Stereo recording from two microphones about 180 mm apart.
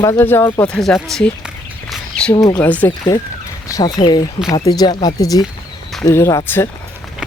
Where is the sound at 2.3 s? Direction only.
20° left (ahead or behind).